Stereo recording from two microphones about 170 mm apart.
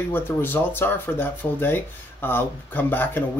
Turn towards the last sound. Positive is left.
turn(degrees=10)  # may be behind; listen again after turning